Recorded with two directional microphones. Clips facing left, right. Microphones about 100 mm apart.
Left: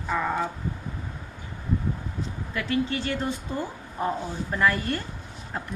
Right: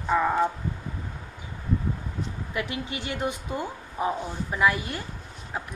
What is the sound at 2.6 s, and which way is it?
A woman's voice, 15° right (ahead or behind).